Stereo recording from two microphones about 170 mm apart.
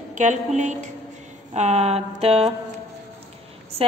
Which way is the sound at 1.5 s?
40° right (ahead or behind).